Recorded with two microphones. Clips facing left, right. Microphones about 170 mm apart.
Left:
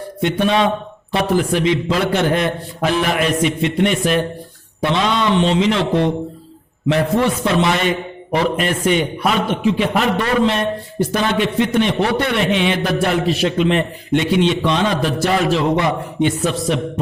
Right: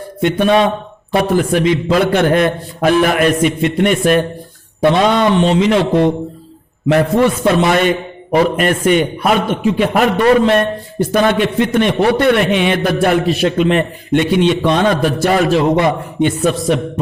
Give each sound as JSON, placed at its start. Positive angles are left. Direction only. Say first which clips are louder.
{"t": 0.2, "sound": "a man's voice", "louder": "right 4 dB", "side_deg": -55}
{"t": 7.4, "sound": "a man's voice", "louder": "right 4 dB", "side_deg": -55}